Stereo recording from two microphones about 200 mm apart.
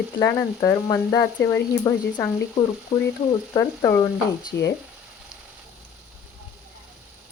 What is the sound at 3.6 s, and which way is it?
Speech, 15° left (ahead or behind).